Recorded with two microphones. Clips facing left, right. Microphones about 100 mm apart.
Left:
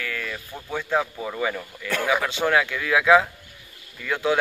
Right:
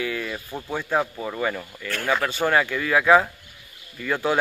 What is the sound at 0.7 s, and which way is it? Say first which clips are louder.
Speech: even; 5° right (ahead or behind).